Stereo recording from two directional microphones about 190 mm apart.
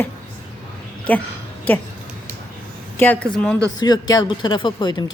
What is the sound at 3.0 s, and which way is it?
Speech, 5° left (ahead or behind).